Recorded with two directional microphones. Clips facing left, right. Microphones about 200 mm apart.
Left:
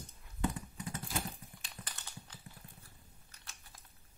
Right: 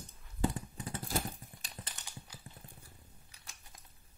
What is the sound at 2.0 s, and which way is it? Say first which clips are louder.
Dog: right 1 dB; 15° right (ahead or behind).